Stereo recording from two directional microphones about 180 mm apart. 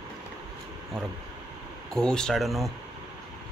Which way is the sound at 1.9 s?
5° left (ahead or behind).